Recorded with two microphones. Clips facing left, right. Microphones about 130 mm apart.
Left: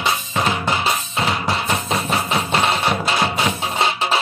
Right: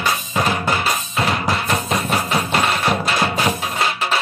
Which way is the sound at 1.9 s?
Centre (ahead or behind).